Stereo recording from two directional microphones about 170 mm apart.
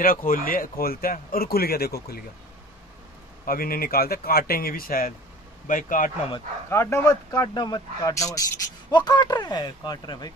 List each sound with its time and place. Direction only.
0.0 s speech: 55° left (ahead or behind)
3.4 s speech: 60° left (ahead or behind)
6.7 s speech: 15° left (ahead or behind)